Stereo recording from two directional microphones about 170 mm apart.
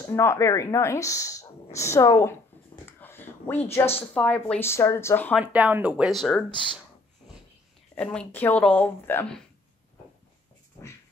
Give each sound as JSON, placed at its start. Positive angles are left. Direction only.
{"t": 0.1, "sound": "speech", "side_deg": 15}
{"t": 5.4, "sound": "speech", "side_deg": -10}
{"t": 7.9, "sound": "speech", "side_deg": 5}